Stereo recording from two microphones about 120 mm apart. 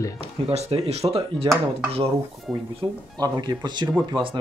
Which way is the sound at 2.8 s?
40° right (ahead or behind).